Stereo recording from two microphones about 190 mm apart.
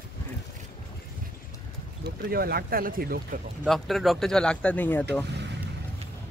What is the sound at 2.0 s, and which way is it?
Speech, 55° right (ahead or behind).